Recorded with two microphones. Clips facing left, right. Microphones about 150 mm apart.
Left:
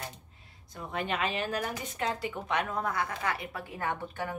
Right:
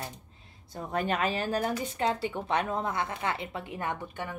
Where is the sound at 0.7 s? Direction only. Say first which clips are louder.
Right 4 dB; 40° right (ahead or behind); by 3.9 s 20° right (ahead or behind).